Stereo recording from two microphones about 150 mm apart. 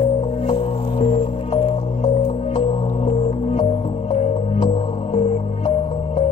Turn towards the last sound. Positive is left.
turn(degrees=45)  # may be behind; listen again after turning